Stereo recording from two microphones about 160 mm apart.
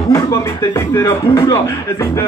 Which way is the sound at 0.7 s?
15° left (ahead or behind).